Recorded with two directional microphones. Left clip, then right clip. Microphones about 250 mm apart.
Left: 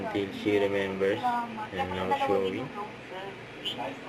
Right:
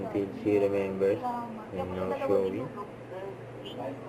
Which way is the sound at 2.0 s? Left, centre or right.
Centre.